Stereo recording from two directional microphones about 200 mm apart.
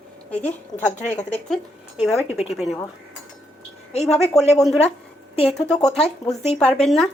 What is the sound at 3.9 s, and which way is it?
Speech, 35° left (ahead or behind).